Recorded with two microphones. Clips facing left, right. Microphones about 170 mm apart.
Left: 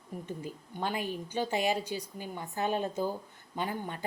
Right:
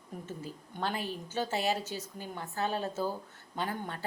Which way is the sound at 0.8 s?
15° left (ahead or behind).